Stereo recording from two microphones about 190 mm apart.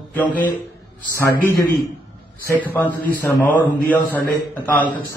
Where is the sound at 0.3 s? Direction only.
45° left (ahead or behind).